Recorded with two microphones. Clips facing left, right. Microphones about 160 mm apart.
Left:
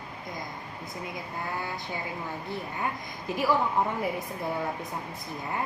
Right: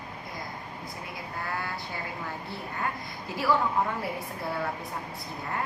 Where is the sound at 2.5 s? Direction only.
15° left (ahead or behind).